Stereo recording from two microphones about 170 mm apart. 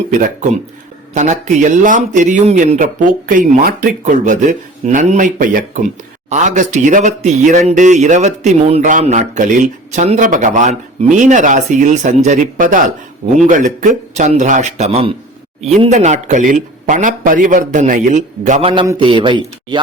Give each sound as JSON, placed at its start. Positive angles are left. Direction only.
{"t": 1.1, "sound": "a man's voice", "side_deg": -45}
{"t": 18.7, "sound": "a man's voice", "side_deg": -25}